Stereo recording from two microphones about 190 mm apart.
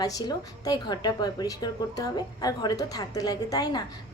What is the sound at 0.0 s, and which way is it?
A woman's voice, 20° left (ahead or behind).